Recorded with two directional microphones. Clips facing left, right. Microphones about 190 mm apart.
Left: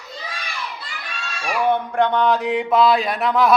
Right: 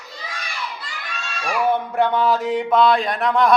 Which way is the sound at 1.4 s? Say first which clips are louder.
Even; centre (ahead or behind).